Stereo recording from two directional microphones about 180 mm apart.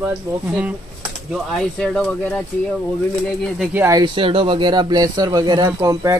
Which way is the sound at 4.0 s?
30° right (ahead or behind).